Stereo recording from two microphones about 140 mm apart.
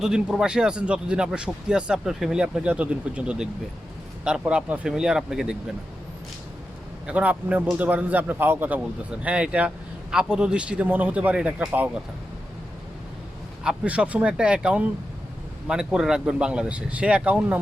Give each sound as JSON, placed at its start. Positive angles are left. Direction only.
{"t": 0.0, "sound": "speech", "side_deg": -5}
{"t": 7.1, "sound": "speech", "side_deg": -10}
{"t": 13.7, "sound": "speech", "side_deg": -10}